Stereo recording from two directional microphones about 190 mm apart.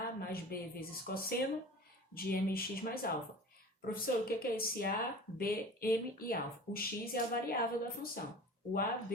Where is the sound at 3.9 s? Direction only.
50° left (ahead or behind).